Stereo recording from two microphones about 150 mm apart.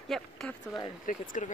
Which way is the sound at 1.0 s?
60° left (ahead or behind).